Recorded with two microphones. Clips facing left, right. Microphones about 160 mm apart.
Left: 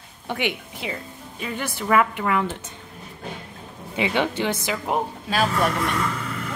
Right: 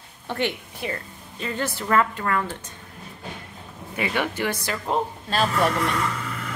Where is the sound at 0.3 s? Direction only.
15° left (ahead or behind).